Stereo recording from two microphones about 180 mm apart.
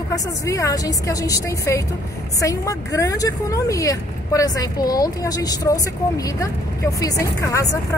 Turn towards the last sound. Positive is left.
turn(degrees=20)  # may be behind; listen again after turning